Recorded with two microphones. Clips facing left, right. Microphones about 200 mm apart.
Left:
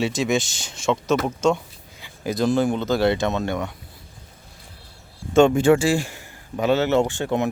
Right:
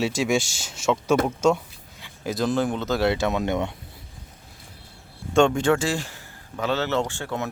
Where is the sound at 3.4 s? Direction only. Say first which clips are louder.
Right 1 dB; 20° right (ahead or behind).